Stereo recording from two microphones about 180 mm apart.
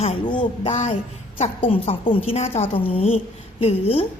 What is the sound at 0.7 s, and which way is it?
A woman's voice, 40° left (ahead or behind).